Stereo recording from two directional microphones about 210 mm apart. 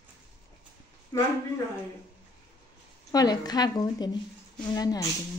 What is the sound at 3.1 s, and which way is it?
A woman's voice, 20° left (ahead or behind).